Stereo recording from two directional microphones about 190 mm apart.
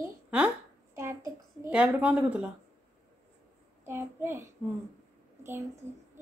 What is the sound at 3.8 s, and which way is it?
Child singing, 10° right (ahead or behind).